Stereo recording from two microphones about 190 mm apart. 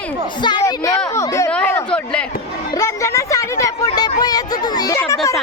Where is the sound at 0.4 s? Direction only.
20° left (ahead or behind).